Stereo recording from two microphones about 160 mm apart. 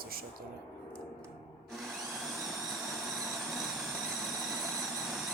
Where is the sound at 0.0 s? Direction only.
70° right (ahead or behind).